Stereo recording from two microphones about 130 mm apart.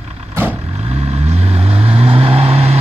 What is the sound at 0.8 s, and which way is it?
Vehicle, 55° right (ahead or behind).